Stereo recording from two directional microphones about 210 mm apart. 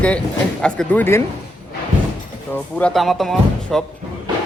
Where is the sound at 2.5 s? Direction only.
5° left (ahead or behind).